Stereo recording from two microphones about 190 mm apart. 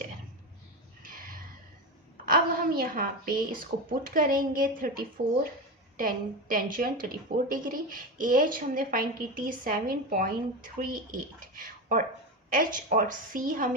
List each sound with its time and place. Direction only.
1.0 s gasp: 45° right (ahead or behind)
2.2 s a woman's voice: 50° right (ahead or behind)